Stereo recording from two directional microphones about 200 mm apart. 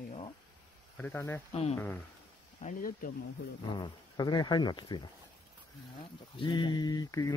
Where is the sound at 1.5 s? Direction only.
30° left (ahead or behind).